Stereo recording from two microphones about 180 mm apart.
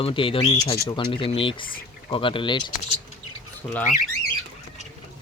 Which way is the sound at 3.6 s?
15° left (ahead or behind).